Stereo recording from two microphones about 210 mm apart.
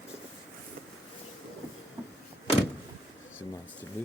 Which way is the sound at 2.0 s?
10° right (ahead or behind).